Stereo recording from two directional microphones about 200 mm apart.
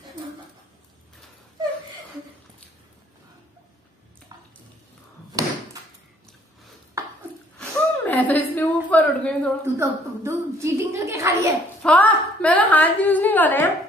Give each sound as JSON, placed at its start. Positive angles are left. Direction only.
{"t": 4.3, "sound": "water", "side_deg": -20}
{"t": 5.4, "sound": "door", "side_deg": -20}
{"t": 7.5, "sound": "a sound", "side_deg": 10}
{"t": 9.8, "sound": "a woman's voice", "side_deg": -15}
{"t": 11.8, "sound": "a woman's voice", "side_deg": 5}